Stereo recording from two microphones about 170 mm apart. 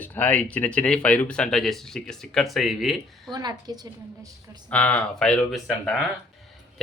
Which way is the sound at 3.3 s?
25° right (ahead or behind).